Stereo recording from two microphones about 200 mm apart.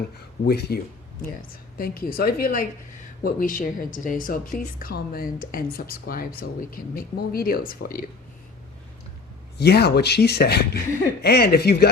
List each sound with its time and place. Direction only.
0.4 s speech: 50° left (ahead or behind)
9.6 s speech: 55° left (ahead or behind)